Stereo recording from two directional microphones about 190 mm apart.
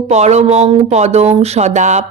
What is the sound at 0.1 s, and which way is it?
Speech, 35° right (ahead or behind).